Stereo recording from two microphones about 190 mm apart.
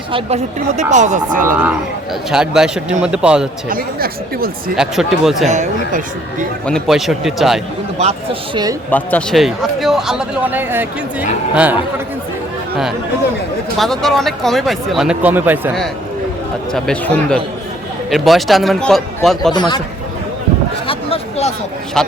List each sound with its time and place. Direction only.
0.8 s speech: 40° right (ahead or behind)
1.5 s speech: 10° right (ahead or behind)
3.7 s speech: 50° right (ahead or behind)
4.8 s speech: centre (ahead or behind)
5.5 s speech: 40° right (ahead or behind)
6.7 s speech: centre (ahead or behind)
7.9 s speech: 35° right (ahead or behind)
8.9 s speech: 10° left (ahead or behind); by 11.8 s 10° right (ahead or behind)
13.7 s speech: centre (ahead or behind)
16.7 s speech: 5° left (ahead or behind)
19.5 s speech: 25° left (ahead or behind)
20.8 s a sound: 30° left (ahead or behind)
22.0 s a man's voice: 5° left (ahead or behind)